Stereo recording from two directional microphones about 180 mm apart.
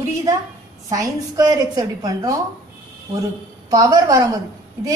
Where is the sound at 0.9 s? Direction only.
20° right (ahead or behind).